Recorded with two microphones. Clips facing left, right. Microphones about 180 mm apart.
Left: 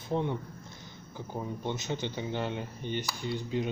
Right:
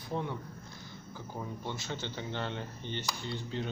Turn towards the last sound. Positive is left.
turn(degrees=15)  # may be behind; listen again after turning